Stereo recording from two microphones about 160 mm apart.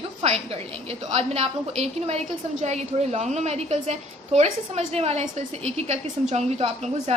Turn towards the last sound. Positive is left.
turn(degrees=-45)  # may be behind; listen again after turning